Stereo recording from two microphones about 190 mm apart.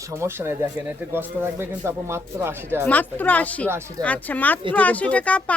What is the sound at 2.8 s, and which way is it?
Speech, 10° left (ahead or behind).